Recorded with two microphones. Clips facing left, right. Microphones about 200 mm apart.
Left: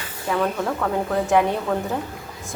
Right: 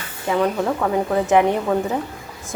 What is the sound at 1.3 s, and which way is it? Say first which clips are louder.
Speech: right 3 dB; 15° right (ahead or behind).